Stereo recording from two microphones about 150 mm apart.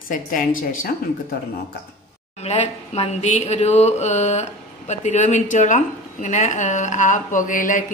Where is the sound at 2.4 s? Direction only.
50° left (ahead or behind).